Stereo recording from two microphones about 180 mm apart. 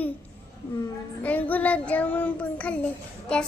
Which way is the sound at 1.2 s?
10° left (ahead or behind).